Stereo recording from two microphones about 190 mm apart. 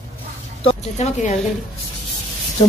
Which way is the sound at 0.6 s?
35° left (ahead or behind).